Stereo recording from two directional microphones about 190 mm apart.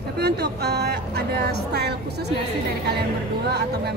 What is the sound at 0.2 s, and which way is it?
Speech, 60° right (ahead or behind).